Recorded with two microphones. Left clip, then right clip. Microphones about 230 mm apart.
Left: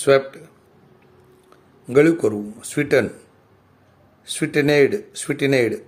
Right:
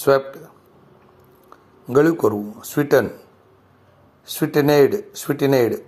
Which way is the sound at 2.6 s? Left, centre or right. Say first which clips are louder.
Right 1 dB; centre.